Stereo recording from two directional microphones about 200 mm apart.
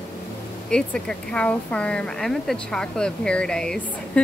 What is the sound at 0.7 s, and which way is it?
Speech, 5° left (ahead or behind).